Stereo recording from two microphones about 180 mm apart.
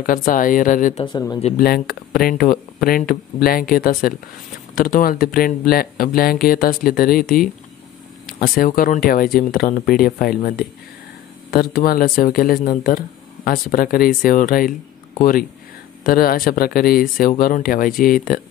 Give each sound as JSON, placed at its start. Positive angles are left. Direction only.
{"t": 0.0, "sound": "speech", "side_deg": 50}
{"t": 1.0, "sound": "speech", "side_deg": 25}
{"t": 2.1, "sound": "speech", "side_deg": 55}